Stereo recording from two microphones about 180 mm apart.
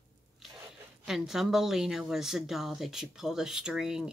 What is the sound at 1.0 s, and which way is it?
Speech, centre (ahead or behind).